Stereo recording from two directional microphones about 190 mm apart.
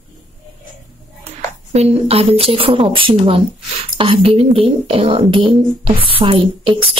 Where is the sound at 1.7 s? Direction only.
35° right (ahead or behind).